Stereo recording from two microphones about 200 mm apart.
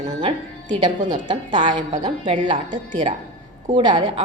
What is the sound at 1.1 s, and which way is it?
A woman's voice, 25° right (ahead or behind).